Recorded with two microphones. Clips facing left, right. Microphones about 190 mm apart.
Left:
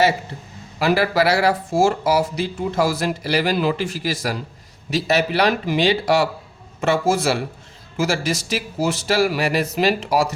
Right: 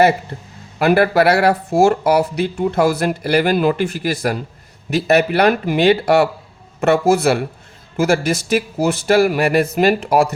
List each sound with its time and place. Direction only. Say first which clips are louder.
0.8 s a man's voice: right 5 dB; 55° right (ahead or behind)